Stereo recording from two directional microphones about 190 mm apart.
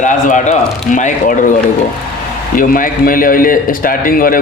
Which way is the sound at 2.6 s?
45° left (ahead or behind).